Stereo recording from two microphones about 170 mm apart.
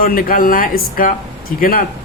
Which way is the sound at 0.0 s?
60° left (ahead or behind).